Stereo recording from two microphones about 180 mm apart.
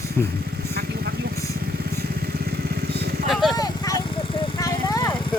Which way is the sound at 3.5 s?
20° left (ahead or behind).